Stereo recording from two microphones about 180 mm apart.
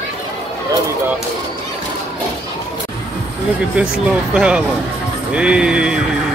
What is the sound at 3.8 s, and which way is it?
Speech, 5° right (ahead or behind).